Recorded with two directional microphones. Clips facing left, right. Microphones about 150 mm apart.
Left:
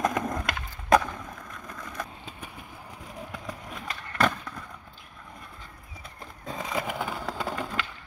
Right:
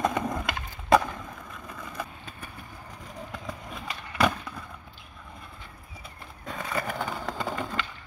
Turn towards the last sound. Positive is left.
turn(degrees=0)  # may be behind; listen again after turning